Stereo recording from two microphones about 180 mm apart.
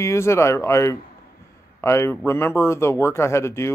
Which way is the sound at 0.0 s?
15° left (ahead or behind).